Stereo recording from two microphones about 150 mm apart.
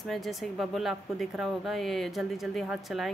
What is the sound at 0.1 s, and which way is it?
Speech, centre (ahead or behind).